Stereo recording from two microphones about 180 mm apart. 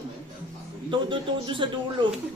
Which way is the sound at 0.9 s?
30° right (ahead or behind).